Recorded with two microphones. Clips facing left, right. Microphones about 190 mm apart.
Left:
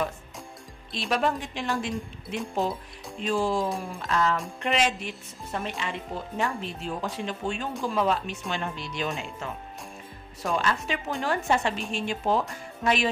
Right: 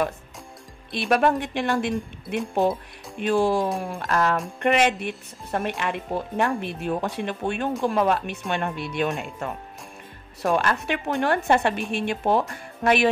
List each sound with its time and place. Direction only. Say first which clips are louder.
0.9 s speech: right 6 dB; 60° right (ahead or behind)